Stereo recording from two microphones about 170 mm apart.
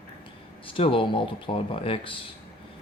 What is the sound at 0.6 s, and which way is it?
Speech, 30° left (ahead or behind).